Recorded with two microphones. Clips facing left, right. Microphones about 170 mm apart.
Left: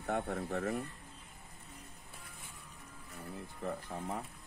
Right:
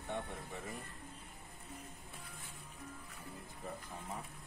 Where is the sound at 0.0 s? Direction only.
85° left.